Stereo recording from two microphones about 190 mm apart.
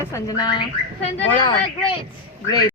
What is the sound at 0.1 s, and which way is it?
Speech, 20° left (ahead or behind).